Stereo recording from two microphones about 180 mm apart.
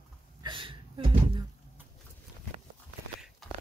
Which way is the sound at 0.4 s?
25° right (ahead or behind).